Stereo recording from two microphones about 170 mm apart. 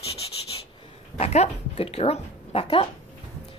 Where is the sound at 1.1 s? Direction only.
40° left (ahead or behind).